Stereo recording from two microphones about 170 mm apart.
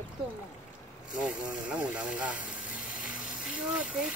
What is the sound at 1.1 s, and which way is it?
Speech, 5° right (ahead or behind).